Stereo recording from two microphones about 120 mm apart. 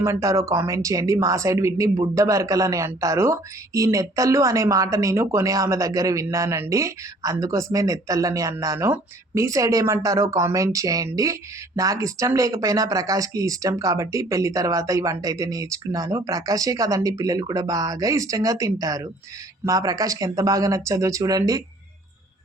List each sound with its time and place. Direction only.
0.0 s speech: 25° right (ahead or behind)